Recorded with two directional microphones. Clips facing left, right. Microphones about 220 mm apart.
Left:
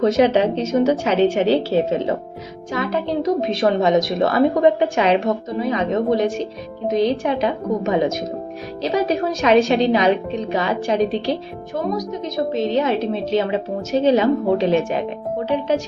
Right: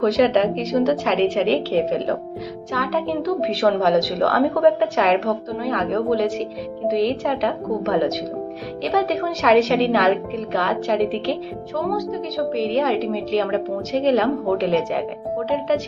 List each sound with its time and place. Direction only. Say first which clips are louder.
0.0 s a woman's voice: left 1 dB; 5° left (ahead or behind)
12.5 s a woman's voice: even; centre (ahead or behind)